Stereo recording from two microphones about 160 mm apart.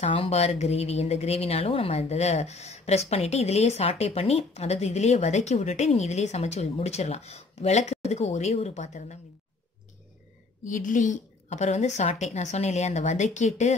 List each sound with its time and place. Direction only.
0.0 s a woman's voice: 40° left (ahead or behind)
10.6 s a woman's voice: 55° left (ahead or behind)